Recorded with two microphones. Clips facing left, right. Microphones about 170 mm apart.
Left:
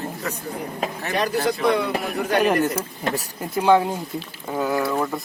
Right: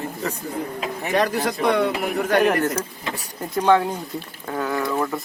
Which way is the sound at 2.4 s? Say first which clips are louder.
Even; 15° left (ahead or behind).